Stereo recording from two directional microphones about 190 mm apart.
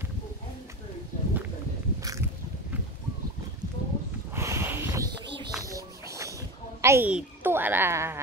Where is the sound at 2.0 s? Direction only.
20° right (ahead or behind).